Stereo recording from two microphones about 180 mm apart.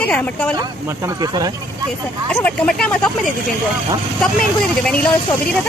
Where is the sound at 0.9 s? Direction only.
15° right (ahead or behind).